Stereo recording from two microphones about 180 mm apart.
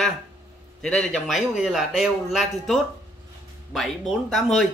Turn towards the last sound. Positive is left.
turn(degrees=0)  # may be behind; listen again after turning